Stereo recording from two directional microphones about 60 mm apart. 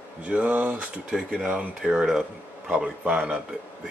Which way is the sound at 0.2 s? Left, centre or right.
Right.